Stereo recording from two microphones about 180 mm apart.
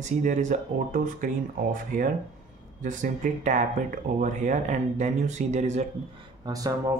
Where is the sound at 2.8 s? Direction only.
45° right (ahead or behind).